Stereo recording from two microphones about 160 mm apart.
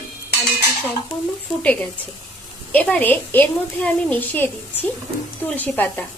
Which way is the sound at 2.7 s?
10° left (ahead or behind).